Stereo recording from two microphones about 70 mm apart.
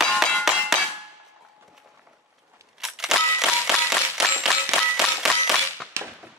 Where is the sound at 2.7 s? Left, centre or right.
Centre.